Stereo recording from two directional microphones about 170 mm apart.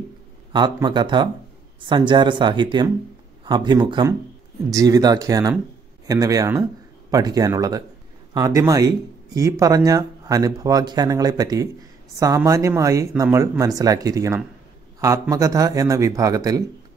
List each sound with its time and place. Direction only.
0.5 s speech: 25° right (ahead or behind)